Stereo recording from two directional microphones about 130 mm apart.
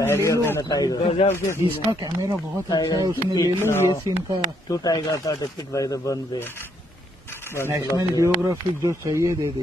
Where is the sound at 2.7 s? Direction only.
30° left (ahead or behind).